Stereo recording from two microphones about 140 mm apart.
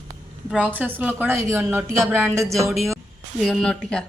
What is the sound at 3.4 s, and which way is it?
Speech, centre (ahead or behind).